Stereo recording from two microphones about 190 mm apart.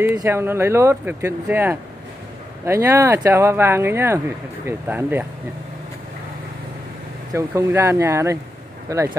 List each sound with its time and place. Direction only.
0.0 s speech: 10° right (ahead or behind)
7.3 s speech: 15° right (ahead or behind)